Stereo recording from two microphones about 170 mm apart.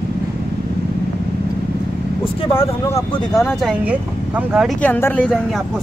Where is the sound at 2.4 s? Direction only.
35° left (ahead or behind).